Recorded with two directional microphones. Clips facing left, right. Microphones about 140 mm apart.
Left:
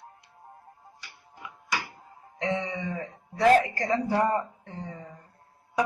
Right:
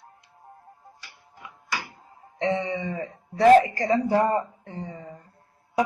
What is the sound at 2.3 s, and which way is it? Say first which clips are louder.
Music: right 4 dB; 30° right (ahead or behind).